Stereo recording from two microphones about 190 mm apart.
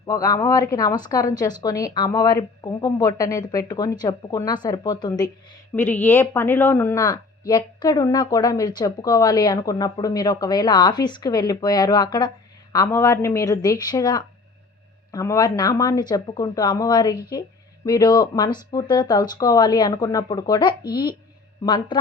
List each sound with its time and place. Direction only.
0.0 s speech: 20° left (ahead or behind)
5.7 s speech: 10° left (ahead or behind)